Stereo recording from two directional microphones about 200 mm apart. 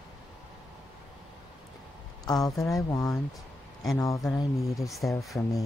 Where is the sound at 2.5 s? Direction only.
Centre (ahead or behind).